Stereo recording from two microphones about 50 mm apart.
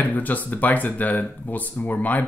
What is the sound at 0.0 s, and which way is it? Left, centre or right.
Speech, left.